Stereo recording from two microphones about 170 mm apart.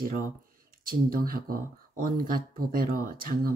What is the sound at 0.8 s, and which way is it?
Speech, 60° right (ahead or behind).